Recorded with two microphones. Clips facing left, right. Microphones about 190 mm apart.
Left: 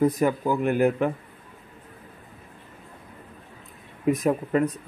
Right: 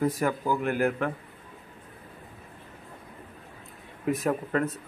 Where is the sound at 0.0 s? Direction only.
20° left (ahead or behind).